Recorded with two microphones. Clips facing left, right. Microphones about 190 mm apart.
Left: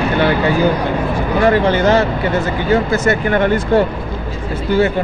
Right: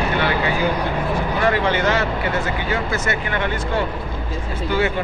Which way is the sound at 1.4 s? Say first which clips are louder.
Left 7 dB; 35° left (ahead or behind).